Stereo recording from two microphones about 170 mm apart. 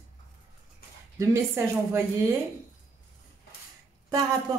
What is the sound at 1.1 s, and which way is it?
Speech, 15° right (ahead or behind).